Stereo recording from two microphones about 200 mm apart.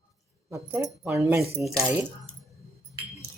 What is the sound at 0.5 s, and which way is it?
Speech, 10° right (ahead or behind).